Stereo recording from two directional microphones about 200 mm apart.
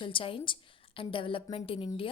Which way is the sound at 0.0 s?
25° left (ahead or behind).